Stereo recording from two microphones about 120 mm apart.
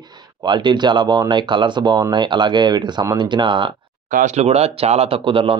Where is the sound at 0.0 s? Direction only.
35° right (ahead or behind).